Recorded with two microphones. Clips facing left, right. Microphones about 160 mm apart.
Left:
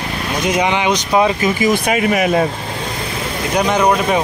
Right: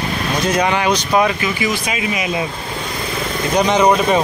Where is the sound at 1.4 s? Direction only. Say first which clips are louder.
Left 5 dB; 45° left (ahead or behind).